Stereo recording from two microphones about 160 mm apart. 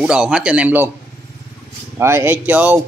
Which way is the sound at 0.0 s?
5° right (ahead or behind).